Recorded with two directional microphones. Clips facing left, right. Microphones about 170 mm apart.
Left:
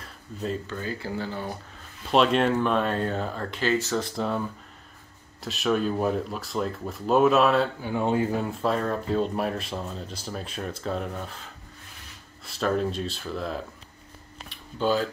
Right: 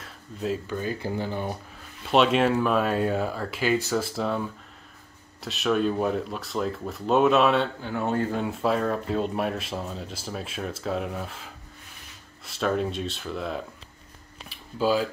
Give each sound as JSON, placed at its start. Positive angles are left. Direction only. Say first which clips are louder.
{"t": 0.0, "sound": "a sound", "louder": "right 1 dB", "side_deg": 0}
{"t": 0.7, "sound": "speech", "louder": "right 3 dB", "side_deg": -15}
{"t": 2.0, "sound": "speech", "louder": "right 1 dB", "side_deg": 0}
{"t": 7.8, "sound": "speech", "louder": "left 2 dB", "side_deg": 15}
{"t": 8.5, "sound": "speech", "louder": "right 1 dB", "side_deg": 0}
{"t": 14.5, "sound": "a sound", "louder": "right 1 dB", "side_deg": -5}